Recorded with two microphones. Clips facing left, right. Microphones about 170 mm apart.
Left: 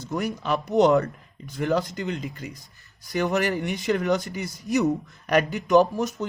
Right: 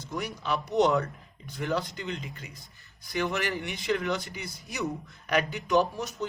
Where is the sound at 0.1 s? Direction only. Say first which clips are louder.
Left 5 dB; 45° left (ahead or behind).